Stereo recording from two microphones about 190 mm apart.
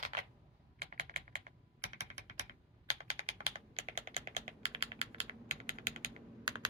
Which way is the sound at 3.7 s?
35° right (ahead or behind).